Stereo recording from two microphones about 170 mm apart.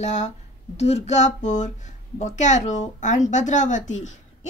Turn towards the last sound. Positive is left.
turn(degrees=45)  # may be behind; listen again after turning